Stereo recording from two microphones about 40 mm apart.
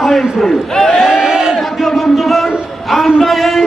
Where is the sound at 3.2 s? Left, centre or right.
Centre.